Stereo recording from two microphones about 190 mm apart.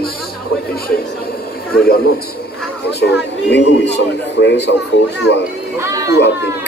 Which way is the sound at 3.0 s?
65° left (ahead or behind).